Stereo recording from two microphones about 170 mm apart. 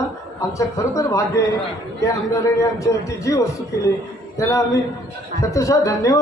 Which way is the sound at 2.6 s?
20° left (ahead or behind).